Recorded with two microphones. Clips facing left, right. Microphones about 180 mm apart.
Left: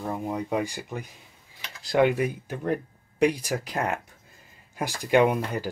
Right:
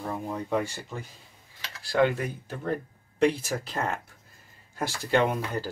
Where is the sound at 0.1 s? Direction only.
10° left (ahead or behind).